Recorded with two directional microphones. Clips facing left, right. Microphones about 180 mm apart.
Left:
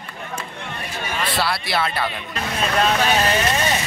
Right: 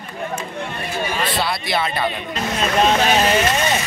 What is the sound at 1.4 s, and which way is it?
Speech, centre (ahead or behind).